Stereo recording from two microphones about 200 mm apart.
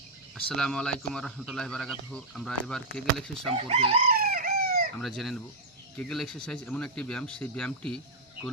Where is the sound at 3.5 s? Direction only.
30° right (ahead or behind).